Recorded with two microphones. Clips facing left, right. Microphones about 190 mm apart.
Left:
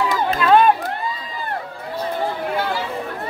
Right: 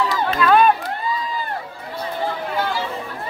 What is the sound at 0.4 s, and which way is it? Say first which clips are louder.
Crowd: left 1 dB; 25° left (ahead or behind).